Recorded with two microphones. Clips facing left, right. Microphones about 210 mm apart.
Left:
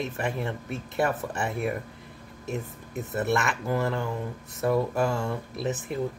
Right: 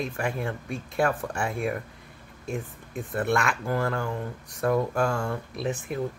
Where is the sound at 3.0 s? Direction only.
5° left (ahead or behind).